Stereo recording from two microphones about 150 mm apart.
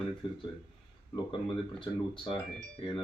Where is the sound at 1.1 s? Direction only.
35° left (ahead or behind).